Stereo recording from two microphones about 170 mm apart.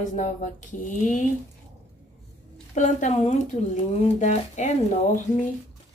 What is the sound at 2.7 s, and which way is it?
A woman's voice, 45° left (ahead or behind).